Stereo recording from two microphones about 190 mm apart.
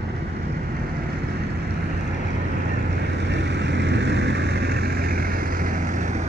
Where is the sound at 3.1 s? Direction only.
65° right (ahead or behind); by 6.2 s 40° right (ahead or behind).